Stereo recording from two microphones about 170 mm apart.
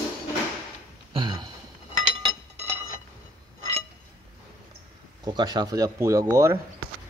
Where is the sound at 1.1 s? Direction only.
25° right (ahead or behind).